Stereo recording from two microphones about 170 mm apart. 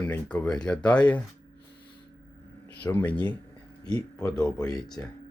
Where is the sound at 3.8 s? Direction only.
20° left (ahead or behind).